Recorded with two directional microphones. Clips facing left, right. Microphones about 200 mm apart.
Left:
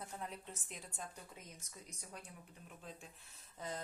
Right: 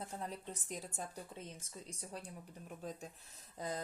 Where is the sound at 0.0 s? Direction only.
30° right (ahead or behind).